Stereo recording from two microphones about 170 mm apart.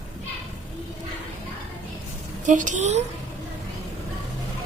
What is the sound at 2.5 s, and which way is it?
Speech, 50° right (ahead or behind).